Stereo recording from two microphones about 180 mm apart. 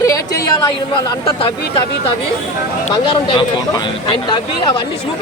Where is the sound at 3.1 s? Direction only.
25° left (ahead or behind).